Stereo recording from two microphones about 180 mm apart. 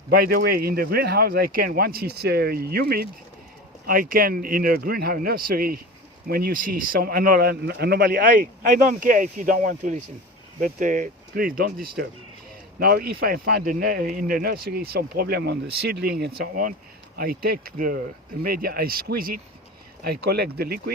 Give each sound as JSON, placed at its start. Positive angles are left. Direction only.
{"t": 0.1, "sound": "speech", "side_deg": -55}